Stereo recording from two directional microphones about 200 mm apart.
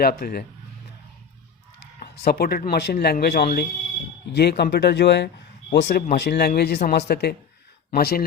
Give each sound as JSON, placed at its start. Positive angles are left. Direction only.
{"t": 0.0, "sound": "speech", "side_deg": 50}
{"t": 2.0, "sound": "speech", "side_deg": 50}